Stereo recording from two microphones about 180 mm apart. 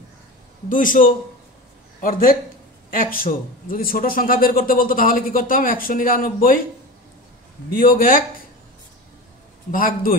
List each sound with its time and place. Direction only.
0.7 s a man's voice: 50° left (ahead or behind)
7.7 s a man's voice: 50° left (ahead or behind)
9.7 s a man's voice: 50° left (ahead or behind)